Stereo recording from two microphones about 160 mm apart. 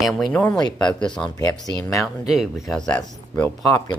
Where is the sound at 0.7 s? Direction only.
25° left (ahead or behind).